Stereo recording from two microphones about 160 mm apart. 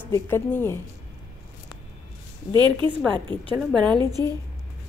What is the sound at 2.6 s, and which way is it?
Speech, 30° right (ahead or behind).